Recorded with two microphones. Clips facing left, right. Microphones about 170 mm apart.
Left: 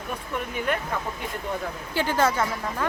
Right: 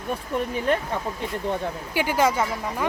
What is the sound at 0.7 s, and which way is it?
Speech, 30° right (ahead or behind).